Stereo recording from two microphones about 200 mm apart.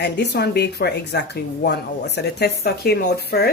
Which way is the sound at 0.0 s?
55° left (ahead or behind).